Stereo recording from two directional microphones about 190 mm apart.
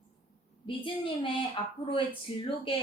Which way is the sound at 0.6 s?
25° left (ahead or behind).